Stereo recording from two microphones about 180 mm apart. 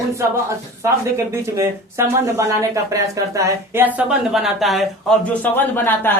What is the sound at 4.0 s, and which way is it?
Speech, 5° right (ahead or behind).